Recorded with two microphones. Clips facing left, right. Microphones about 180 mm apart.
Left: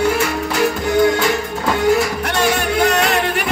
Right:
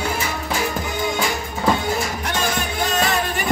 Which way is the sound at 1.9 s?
70° left (ahead or behind).